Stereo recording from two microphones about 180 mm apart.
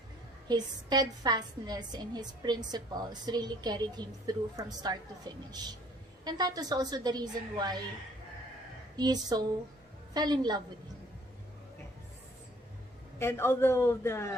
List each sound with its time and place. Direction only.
0.4 s a woman's voice: 20° right (ahead or behind)
9.0 s a woman's voice: 20° right (ahead or behind)
13.1 s a man's voice: 15° left (ahead or behind)